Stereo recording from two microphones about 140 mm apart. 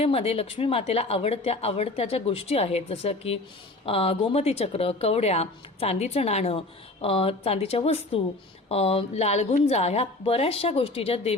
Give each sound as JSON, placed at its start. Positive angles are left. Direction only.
{"t": 0.0, "sound": "a woman's voice", "side_deg": 45}